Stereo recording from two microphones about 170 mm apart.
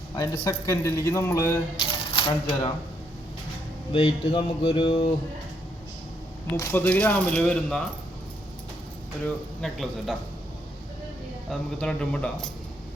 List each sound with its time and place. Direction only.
0.2 s speech: 20° left (ahead or behind)
1.8 s speech: 30° left (ahead or behind)
3.9 s speech: 30° left (ahead or behind)
6.6 s speech: 10° left (ahead or behind)
9.2 s speech: 5° left (ahead or behind)
11.8 s speech: 5° left (ahead or behind)